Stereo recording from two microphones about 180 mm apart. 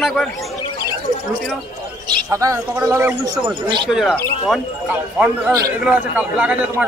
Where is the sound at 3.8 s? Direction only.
Centre (ahead or behind).